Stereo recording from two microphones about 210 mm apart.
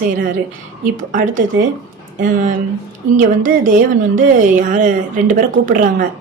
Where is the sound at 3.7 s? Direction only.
40° right (ahead or behind).